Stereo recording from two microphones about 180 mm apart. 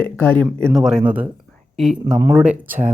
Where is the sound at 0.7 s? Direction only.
5° right (ahead or behind).